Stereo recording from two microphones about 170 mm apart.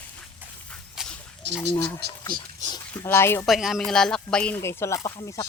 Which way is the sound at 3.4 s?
Centre (ahead or behind).